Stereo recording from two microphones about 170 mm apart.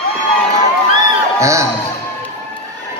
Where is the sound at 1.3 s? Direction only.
20° right (ahead or behind).